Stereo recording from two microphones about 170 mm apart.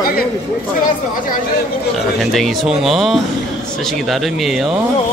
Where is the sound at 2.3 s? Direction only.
Centre (ahead or behind).